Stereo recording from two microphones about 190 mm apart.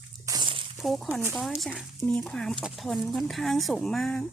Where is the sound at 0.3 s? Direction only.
25° right (ahead or behind).